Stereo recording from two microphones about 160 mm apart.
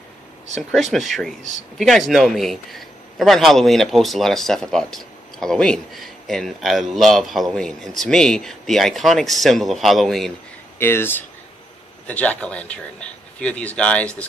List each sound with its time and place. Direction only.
0.6 s a man's voice: 5° left (ahead or behind)
10.8 s speech: 15° left (ahead or behind)